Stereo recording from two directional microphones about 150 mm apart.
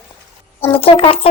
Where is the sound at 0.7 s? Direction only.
40° left (ahead or behind).